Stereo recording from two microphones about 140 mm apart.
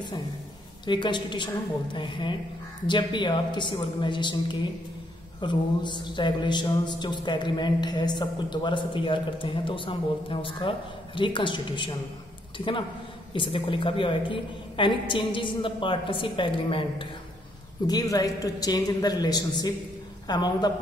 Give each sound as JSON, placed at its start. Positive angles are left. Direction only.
{"t": 0.8, "sound": "speech", "side_deg": 35}
{"t": 17.8, "sound": "a woman's voice", "side_deg": 25}